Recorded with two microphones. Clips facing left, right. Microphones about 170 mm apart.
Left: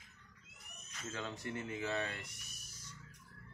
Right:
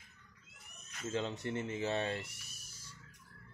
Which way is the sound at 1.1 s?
25° right (ahead or behind).